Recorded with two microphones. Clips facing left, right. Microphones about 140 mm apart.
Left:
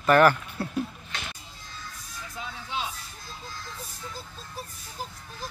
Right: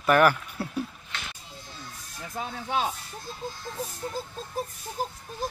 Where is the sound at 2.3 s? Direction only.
50° right (ahead or behind).